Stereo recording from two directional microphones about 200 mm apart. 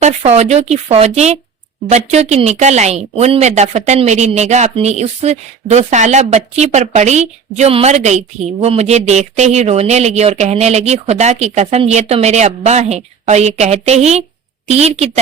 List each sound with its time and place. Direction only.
0.0 s speech: 35° right (ahead or behind)